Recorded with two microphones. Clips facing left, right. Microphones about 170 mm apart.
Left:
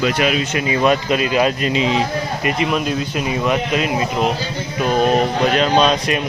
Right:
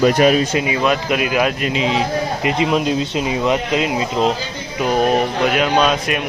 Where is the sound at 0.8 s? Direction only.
5° right (ahead or behind).